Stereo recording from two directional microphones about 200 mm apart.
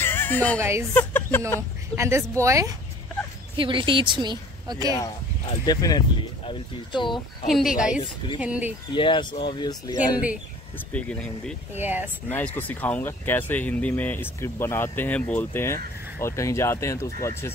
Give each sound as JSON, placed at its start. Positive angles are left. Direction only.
{"t": 0.0, "sound": "music", "side_deg": 10}
{"t": 0.6, "sound": "speech", "side_deg": -15}
{"t": 0.9, "sound": "a sound", "side_deg": 10}
{"t": 2.0, "sound": "speech", "side_deg": -15}
{"t": 3.5, "sound": "a woman's voice", "side_deg": -25}
{"t": 5.7, "sound": "speech", "side_deg": 20}
{"t": 7.4, "sound": "speech", "side_deg": 0}
{"t": 8.9, "sound": "speech", "side_deg": 25}
{"t": 10.9, "sound": "speech", "side_deg": 5}
{"t": 11.7, "sound": "speech", "side_deg": -10}
{"t": 12.3, "sound": "speech", "side_deg": 10}